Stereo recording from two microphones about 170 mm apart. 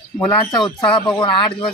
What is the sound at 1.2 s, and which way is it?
Speech, 30° left (ahead or behind).